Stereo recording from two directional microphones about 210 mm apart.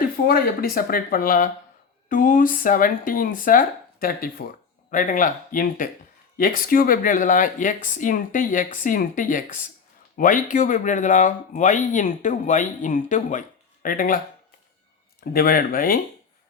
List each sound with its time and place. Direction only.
0.0 s speech: 45° left (ahead or behind)
15.2 s speech: 45° left (ahead or behind)